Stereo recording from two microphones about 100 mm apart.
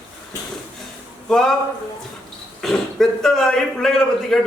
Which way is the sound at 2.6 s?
5° left (ahead or behind).